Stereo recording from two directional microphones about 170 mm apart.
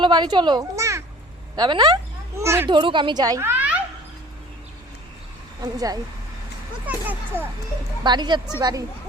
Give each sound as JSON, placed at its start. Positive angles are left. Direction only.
{"t": 0.0, "sound": "a child's voice", "side_deg": -25}
{"t": 2.4, "sound": "speech", "side_deg": -15}
{"t": 2.6, "sound": "speech", "side_deg": -30}
{"t": 6.8, "sound": "speech", "side_deg": -10}
{"t": 8.0, "sound": "speech", "side_deg": -25}